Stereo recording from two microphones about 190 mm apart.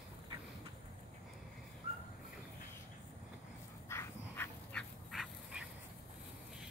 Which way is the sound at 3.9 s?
15° left (ahead or behind).